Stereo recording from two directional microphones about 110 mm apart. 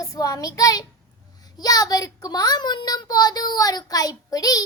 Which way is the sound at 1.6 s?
35° left (ahead or behind).